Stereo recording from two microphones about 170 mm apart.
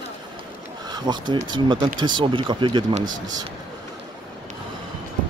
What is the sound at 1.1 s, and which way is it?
Speech, 25° right (ahead or behind).